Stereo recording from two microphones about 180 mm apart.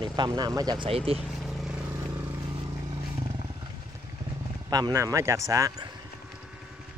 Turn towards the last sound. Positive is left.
turn(degrees=-20)  # may be behind; listen again after turning